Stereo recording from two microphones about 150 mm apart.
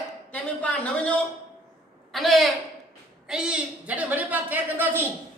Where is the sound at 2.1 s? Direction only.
Centre (ahead or behind).